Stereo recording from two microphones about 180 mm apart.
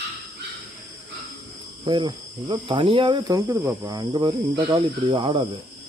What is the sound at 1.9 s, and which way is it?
Cricket, 25° right (ahead or behind).